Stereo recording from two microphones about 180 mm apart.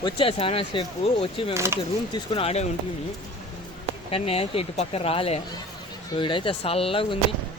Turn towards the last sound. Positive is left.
turn(degrees=30)  # may be behind; listen again after turning